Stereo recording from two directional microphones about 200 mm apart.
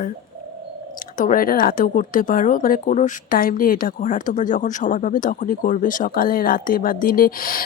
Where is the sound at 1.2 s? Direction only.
45° left (ahead or behind).